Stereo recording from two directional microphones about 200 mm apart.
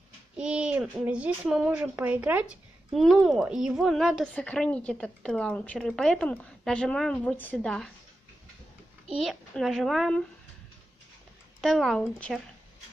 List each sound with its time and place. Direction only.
0.4 s speech: 5° right (ahead or behind)
9.2 s speech: centre (ahead or behind)
11.6 s speech: centre (ahead or behind)